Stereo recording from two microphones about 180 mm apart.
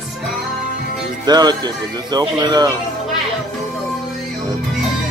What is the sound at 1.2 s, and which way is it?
Speech, 25° right (ahead or behind).